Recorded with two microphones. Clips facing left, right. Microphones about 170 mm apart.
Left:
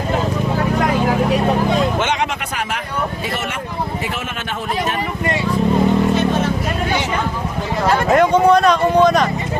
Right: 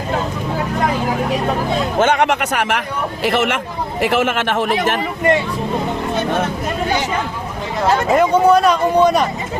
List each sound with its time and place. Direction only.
2.0 s speech: 55° right (ahead or behind); by 2.8 s 75° right (ahead or behind)
3.2 s speech: 90° right
8.1 s speech: 5° right (ahead or behind)